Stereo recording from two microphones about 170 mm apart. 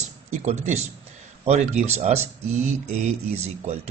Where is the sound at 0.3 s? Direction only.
40° right (ahead or behind).